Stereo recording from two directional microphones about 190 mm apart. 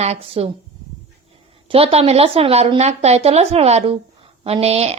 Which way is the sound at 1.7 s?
30° right (ahead or behind).